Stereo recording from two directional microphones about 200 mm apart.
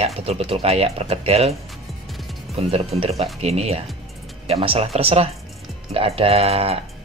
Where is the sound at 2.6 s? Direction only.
30° right (ahead or behind).